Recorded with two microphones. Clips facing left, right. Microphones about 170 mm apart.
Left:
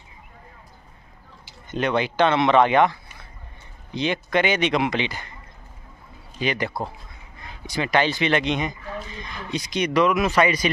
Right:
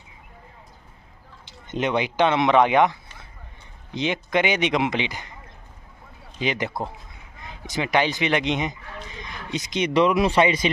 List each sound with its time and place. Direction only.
1.7 s a man's voice: 20° right (ahead or behind)
6.4 s a man's voice: 20° right (ahead or behind)